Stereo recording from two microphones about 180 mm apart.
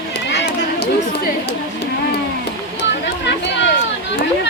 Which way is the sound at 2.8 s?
75° left (ahead or behind).